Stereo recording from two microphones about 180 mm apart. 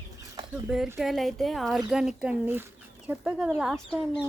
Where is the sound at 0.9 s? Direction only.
Centre (ahead or behind).